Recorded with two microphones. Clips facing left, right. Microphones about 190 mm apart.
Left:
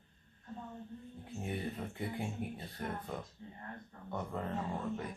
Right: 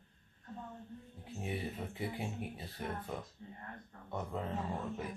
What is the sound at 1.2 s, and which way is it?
Speech, 5° right (ahead or behind).